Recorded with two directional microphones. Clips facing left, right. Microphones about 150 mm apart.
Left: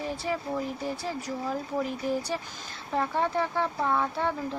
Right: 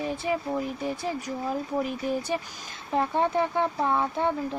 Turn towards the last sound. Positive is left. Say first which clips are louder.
# right 3 dB
turn(degrees=-15)  # may be behind; listen again after turning